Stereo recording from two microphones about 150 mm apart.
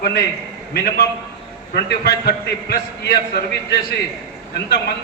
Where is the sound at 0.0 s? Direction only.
90° left.